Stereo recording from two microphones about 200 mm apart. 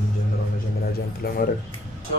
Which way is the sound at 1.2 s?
50° left (ahead or behind).